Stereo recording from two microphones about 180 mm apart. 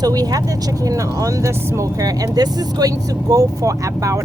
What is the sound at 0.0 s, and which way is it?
Speech, 20° right (ahead or behind).